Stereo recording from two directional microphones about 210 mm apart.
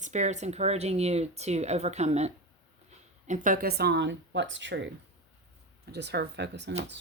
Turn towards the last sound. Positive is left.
turn(degrees=-55)  # may be behind; listen again after turning